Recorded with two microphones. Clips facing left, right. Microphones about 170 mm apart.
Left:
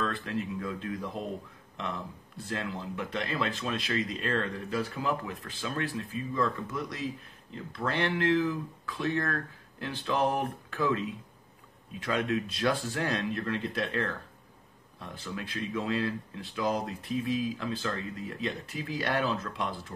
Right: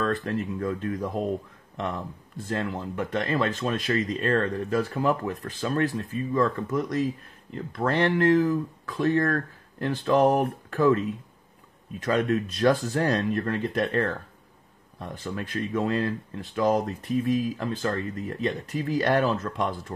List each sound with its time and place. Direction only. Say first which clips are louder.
0.0 s speech: right 6 dB; 45° right (ahead or behind)